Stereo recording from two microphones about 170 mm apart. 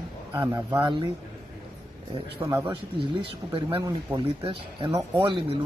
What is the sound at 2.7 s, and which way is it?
A man's voice, 30° right (ahead or behind).